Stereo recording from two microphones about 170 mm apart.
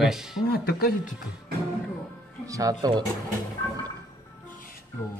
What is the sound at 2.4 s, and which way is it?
Speech, 20° right (ahead or behind).